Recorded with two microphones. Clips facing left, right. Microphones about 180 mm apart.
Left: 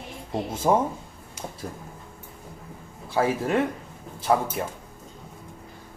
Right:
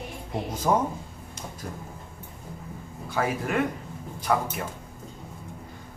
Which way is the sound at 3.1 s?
30° left (ahead or behind).